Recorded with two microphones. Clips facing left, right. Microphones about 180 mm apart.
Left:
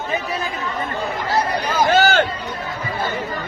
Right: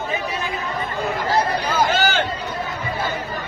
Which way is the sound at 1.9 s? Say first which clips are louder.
Left 5 dB; 45° left (ahead or behind).